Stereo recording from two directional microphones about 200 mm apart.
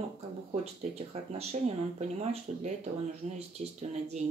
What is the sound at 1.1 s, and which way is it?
Speech, 30° right (ahead or behind).